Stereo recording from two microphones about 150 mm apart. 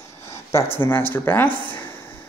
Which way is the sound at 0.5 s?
15° left (ahead or behind).